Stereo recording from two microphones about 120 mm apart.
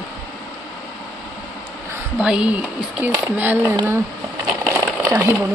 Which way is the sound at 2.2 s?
10° right (ahead or behind).